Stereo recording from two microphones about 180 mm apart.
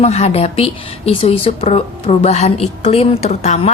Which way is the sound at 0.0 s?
35° left (ahead or behind).